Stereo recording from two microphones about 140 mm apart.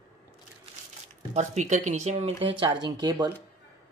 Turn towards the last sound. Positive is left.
turn(degrees=-30)  # may be behind; listen again after turning